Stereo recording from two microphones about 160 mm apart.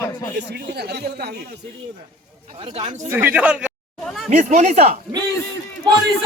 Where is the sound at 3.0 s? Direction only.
15° right (ahead or behind).